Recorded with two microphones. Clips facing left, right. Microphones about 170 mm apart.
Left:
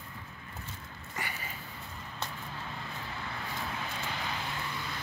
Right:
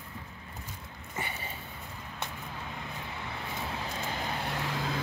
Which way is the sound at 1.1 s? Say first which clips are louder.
Right 2 dB; 25° right (ahead or behind).